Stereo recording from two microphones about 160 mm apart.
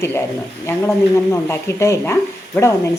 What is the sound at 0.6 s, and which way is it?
Speech, 15° left (ahead or behind).